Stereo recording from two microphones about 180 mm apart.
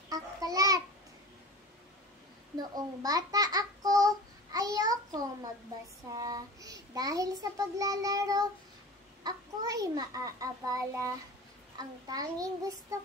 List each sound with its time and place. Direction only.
0.1 s babbling: 20° right (ahead or behind)
2.5 s babbling: 20° right (ahead or behind)
6.1 s child singing: 20° right (ahead or behind)